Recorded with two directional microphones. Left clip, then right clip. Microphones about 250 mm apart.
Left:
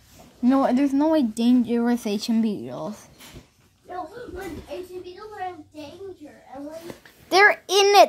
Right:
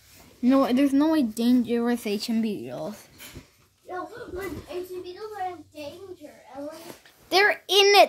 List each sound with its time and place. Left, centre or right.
0.4 s speech: centre
7.2 s a child's voice: centre